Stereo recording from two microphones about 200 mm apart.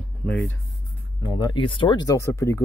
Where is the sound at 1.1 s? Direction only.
20° left (ahead or behind).